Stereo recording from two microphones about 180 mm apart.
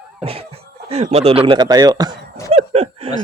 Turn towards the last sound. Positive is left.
turn(degrees=-35)  # may be behind; listen again after turning